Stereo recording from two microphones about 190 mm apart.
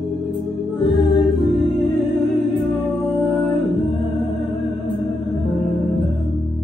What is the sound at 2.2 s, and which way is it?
Music, centre (ahead or behind).